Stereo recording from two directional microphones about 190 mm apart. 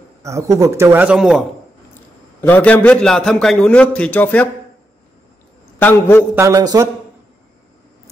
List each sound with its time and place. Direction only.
0.2 s speech: 15° right (ahead or behind)
2.4 s a man's voice: 10° left (ahead or behind)
5.8 s a man's voice: 10° left (ahead or behind)
6.3 s speech: 15° right (ahead or behind)